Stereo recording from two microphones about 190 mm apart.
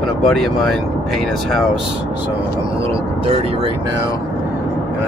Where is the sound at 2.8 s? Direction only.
30° right (ahead or behind).